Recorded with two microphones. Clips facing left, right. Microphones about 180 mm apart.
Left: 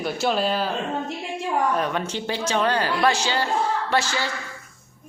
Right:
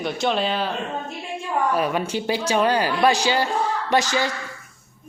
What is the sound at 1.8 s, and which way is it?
Speech, 10° right (ahead or behind).